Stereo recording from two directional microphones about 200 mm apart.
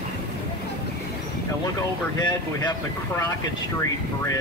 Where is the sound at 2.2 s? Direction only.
20° left (ahead or behind).